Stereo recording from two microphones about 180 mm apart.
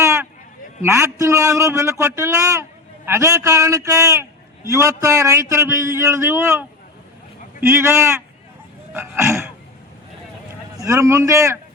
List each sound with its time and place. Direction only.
0.0 s a sound: 15° right (ahead or behind)
0.8 s a man's voice: 15° right (ahead or behind)
10.5 s speech: 15° right (ahead or behind)